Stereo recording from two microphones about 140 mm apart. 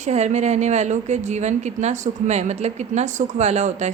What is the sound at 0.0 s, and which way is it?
A woman's voice, 55° right (ahead or behind).